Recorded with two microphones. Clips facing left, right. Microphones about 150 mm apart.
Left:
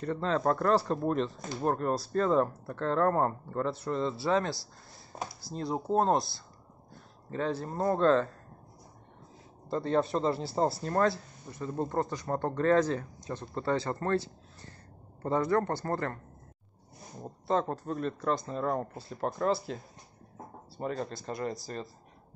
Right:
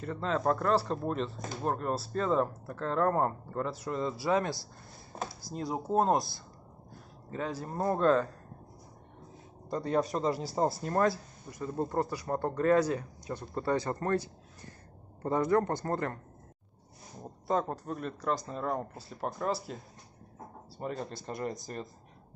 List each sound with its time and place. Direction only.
0.0 s speech: 5° right (ahead or behind)
7.3 s speech: 10° right (ahead or behind)
9.7 s speech: 15° right (ahead or behind)
17.5 s speech: 10° right (ahead or behind)
20.8 s speech: 15° right (ahead or behind)